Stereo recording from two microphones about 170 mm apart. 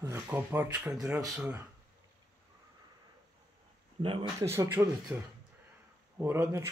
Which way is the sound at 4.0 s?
30° right (ahead or behind).